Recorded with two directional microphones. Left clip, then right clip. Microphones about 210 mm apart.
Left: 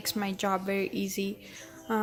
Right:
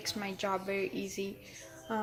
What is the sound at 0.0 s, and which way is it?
Speech, 30° left (ahead or behind).